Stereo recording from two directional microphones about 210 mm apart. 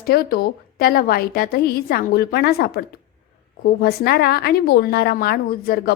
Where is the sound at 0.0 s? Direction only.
45° left (ahead or behind).